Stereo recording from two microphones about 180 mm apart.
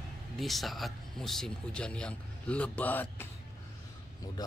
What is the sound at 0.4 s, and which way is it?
Speech, centre (ahead or behind).